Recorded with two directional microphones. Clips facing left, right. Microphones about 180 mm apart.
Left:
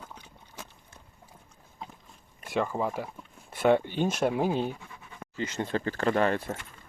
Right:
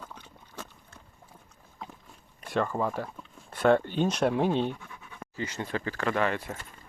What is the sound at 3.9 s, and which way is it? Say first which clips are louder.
Speech: right 1 dB; 5° left (ahead or behind).